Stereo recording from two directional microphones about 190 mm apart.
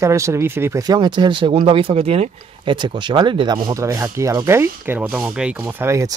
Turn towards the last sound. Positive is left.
turn(degrees=-15)  # may be behind; listen again after turning